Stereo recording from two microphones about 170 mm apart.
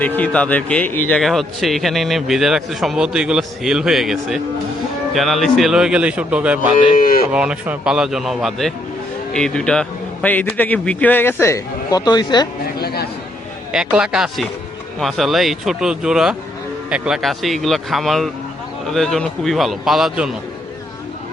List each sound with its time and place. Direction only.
0.2 s a man's voice: 10° left (ahead or behind); by 6.7 s 5° right (ahead or behind)
6.9 s speech: 55° left (ahead or behind)
7.3 s a man's voice: 5° right (ahead or behind); by 12.5 s 25° left (ahead or behind)
12.8 s a sound: 65° left (ahead or behind)
13.7 s a man's voice: 5° right (ahead or behind)